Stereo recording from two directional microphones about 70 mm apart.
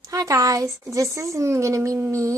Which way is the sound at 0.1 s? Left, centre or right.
Right.